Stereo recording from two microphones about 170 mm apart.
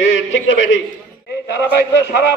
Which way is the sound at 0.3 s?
90° left.